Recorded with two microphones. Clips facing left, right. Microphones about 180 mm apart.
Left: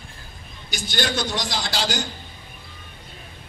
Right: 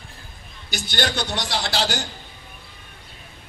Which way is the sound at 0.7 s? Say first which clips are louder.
Even; 65° right (ahead or behind).